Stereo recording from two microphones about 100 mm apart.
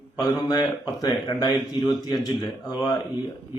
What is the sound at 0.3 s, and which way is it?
A man's voice, 40° left (ahead or behind).